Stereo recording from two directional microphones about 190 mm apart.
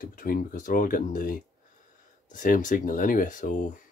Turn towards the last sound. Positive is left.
turn(degrees=45)  # may be behind; listen again after turning